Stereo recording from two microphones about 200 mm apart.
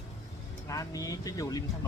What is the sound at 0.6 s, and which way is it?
Speech, 15° left (ahead or behind).